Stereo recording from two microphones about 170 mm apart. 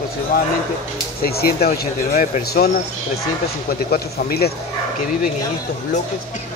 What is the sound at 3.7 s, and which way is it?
Speech, 60° left (ahead or behind).